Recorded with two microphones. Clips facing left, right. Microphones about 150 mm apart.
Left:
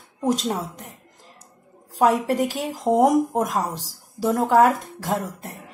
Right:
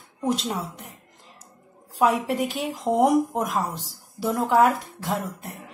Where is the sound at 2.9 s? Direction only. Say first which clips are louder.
Left 4 dB; 20° left (ahead or behind).